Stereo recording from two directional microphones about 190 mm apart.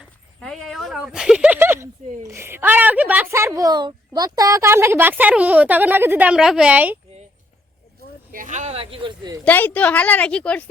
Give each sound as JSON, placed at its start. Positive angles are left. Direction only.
{"t": 0.3, "sound": "speech", "side_deg": 5}
{"t": 8.3, "sound": "speech", "side_deg": -45}
{"t": 9.4, "sound": "a woman's voice", "side_deg": 10}